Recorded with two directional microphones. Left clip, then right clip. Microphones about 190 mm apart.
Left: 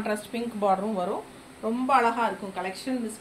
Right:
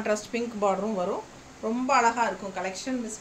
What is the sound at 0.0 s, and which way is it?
Speech, 30° right (ahead or behind).